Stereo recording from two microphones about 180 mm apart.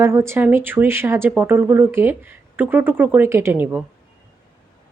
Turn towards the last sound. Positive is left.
turn(degrees=-10)  # may be behind; listen again after turning